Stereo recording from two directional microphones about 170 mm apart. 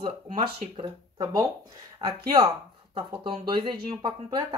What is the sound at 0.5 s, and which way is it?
Speech, 30° right (ahead or behind).